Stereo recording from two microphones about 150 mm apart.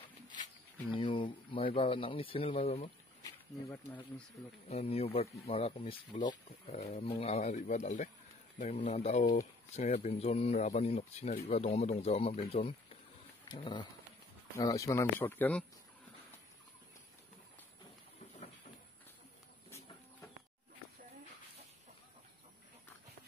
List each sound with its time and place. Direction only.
0.9 s speech: 35° left (ahead or behind)
4.6 s speech: 40° left (ahead or behind)
6.1 s speech: 50° left (ahead or behind)
7.0 s speech: 40° left (ahead or behind)
13.5 s speech: 30° left (ahead or behind); by 15.6 s 10° left (ahead or behind)